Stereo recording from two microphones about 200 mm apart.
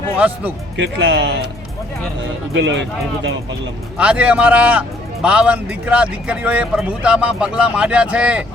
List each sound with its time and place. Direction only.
0.8 s speech: 60° right (ahead or behind)
2.5 s speech: 65° right (ahead or behind)
3.9 s a man's voice: 5° right (ahead or behind)